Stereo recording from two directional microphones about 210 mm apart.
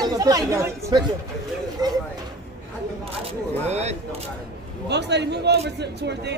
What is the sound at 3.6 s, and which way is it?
Speech, 30° right (ahead or behind).